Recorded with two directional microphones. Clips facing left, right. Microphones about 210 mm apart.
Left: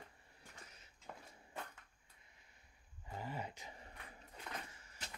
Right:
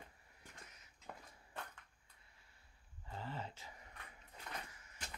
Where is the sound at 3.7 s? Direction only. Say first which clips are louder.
Left 3 dB; 30° left (ahead or behind).